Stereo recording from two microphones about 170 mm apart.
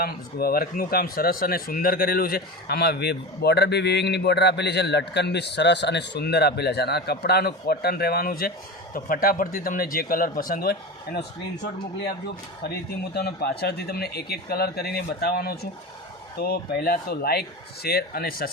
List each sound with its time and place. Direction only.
0.0 s speech: 65° left (ahead or behind)
13.1 s speech: 65° left (ahead or behind)